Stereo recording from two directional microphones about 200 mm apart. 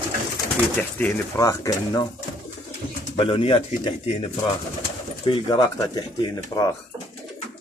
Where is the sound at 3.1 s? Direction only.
25° left (ahead or behind).